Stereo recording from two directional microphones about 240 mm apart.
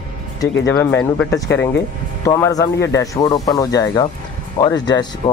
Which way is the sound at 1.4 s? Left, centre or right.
Left.